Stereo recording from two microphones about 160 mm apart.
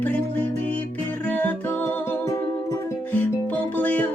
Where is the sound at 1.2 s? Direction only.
10° left (ahead or behind).